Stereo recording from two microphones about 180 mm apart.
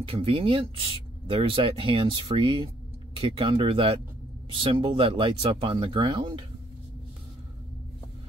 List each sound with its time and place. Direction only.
0.1 s speech: 30° right (ahead or behind)